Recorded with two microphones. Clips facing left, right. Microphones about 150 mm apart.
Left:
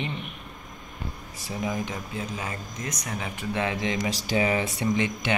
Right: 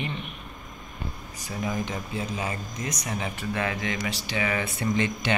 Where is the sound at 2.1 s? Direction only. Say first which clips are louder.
Right 4 dB; 10° right (ahead or behind).